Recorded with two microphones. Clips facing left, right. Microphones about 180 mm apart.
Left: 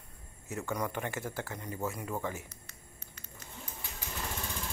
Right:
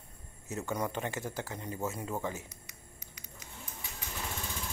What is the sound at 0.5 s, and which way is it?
Speech, 20° right (ahead or behind).